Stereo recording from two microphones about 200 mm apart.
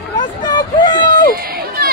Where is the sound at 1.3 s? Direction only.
50° right (ahead or behind).